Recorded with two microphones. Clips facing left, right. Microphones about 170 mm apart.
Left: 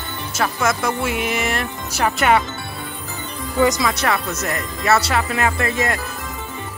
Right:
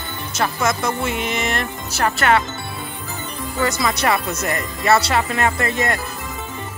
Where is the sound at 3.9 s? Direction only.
Centre (ahead or behind).